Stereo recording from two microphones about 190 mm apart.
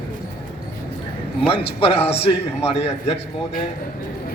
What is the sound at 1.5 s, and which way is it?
A man's voice, 30° left (ahead or behind).